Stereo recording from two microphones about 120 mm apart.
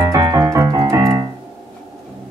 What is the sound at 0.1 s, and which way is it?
Keyboard, 30° right (ahead or behind).